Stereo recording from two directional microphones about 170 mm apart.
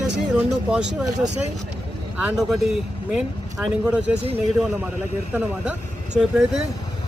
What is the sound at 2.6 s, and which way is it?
A man's voice, 5° right (ahead or behind).